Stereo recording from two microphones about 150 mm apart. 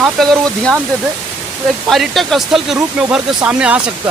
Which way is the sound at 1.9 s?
Centre (ahead or behind).